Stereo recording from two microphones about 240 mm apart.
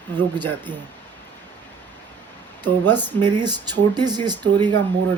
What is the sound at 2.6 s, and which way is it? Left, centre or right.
Speech, centre.